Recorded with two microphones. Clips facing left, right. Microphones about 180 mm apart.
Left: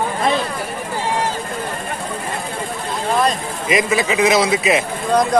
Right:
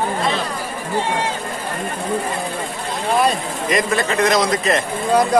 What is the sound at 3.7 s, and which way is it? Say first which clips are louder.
A man's voice: left 2 dB; centre (ahead or behind).